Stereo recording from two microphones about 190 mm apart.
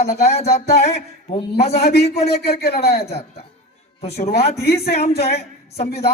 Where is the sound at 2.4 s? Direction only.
55° left (ahead or behind).